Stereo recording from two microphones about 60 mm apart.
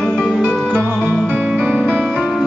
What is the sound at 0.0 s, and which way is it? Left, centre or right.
Music, centre.